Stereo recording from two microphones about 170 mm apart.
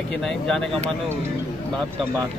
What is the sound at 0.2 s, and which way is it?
Speech, 5° left (ahead or behind).